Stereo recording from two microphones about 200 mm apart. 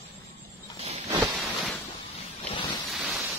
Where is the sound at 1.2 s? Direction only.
Centre (ahead or behind).